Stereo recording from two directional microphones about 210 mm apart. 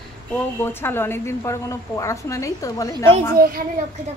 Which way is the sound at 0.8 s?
10° left (ahead or behind).